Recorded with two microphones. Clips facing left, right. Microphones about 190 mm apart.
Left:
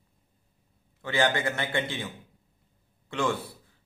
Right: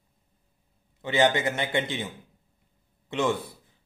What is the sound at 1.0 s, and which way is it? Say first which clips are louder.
A man's voice: right 3 dB; 20° right (ahead or behind).